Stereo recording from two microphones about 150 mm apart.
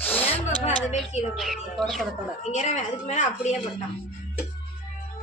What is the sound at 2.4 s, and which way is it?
A woman's voice, 50° left (ahead or behind).